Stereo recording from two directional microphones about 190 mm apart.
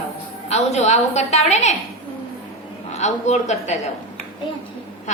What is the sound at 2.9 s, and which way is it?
Speech, 35° left (ahead or behind).